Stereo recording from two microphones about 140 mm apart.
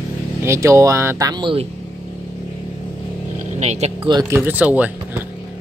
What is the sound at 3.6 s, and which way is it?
Speech, 50° right (ahead or behind).